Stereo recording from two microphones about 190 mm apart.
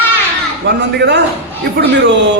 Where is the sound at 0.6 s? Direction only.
65° right (ahead or behind).